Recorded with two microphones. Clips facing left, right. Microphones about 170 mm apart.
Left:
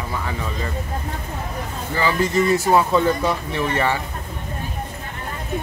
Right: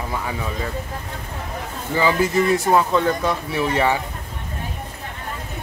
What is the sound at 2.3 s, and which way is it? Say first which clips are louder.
Speech: left 3 dB; centre (ahead or behind).